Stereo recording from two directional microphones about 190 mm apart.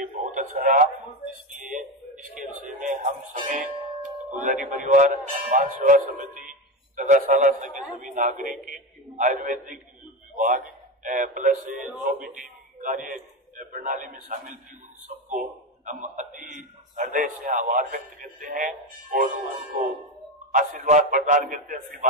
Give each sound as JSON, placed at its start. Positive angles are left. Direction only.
{"t": 0.0, "sound": "radio", "side_deg": -40}
{"t": 1.6, "sound": "a sound", "side_deg": -40}
{"t": 2.8, "sound": "music", "side_deg": -40}
{"t": 4.3, "sound": "a man's voice", "side_deg": -40}
{"t": 20.5, "sound": "speech", "side_deg": -45}